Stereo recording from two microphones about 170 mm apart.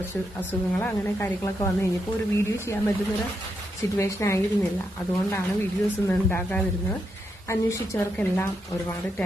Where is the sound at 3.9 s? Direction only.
15° left (ahead or behind).